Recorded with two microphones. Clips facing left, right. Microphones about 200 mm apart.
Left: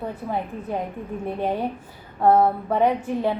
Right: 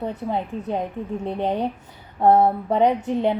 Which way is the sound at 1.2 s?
20° right (ahead or behind).